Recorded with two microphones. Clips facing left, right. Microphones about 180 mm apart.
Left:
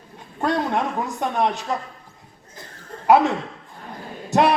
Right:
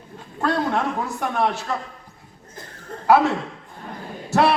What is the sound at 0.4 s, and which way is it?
A man's voice, 20° left (ahead or behind).